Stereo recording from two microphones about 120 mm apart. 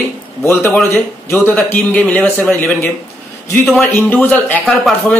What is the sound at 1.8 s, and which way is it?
Speech, 10° left (ahead or behind).